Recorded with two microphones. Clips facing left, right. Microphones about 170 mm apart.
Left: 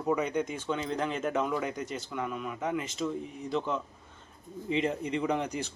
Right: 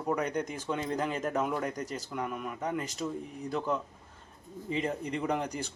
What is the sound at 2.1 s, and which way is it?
Speech, centre (ahead or behind).